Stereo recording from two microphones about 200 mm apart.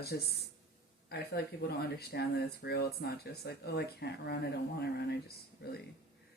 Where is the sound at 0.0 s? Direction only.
50° left (ahead or behind).